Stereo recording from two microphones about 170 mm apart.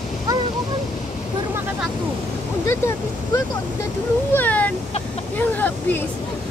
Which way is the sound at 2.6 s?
15° left (ahead or behind).